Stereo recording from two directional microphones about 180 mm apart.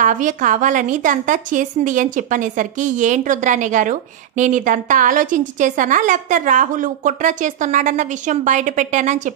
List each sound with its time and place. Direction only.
0.0 s a woman's voice: 45° right (ahead or behind)